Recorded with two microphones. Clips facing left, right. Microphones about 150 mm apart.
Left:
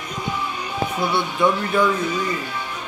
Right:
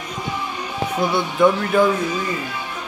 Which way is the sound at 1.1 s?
50° right (ahead or behind).